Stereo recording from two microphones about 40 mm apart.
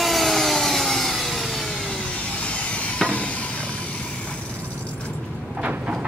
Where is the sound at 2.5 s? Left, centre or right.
Left.